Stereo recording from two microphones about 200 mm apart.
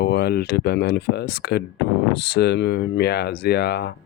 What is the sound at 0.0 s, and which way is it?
Speech, 55° left (ahead or behind).